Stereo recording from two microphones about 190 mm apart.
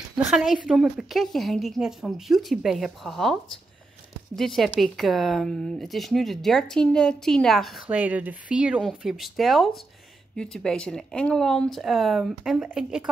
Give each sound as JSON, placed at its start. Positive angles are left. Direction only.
{"t": 0.1, "sound": "speech", "side_deg": 0}